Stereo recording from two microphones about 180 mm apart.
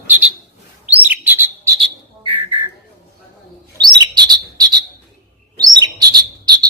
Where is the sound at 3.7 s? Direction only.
25° right (ahead or behind).